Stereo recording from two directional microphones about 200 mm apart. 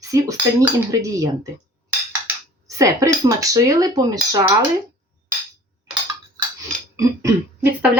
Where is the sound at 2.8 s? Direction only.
15° right (ahead or behind).